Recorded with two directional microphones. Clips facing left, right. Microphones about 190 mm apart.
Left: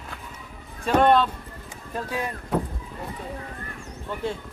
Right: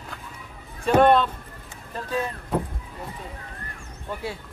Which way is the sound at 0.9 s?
5° right (ahead or behind).